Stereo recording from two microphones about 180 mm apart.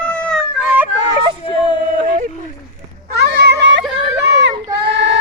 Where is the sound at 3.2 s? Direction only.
70° right (ahead or behind).